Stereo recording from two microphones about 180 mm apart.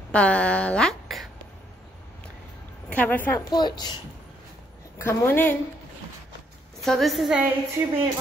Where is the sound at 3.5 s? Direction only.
25° left (ahead or behind).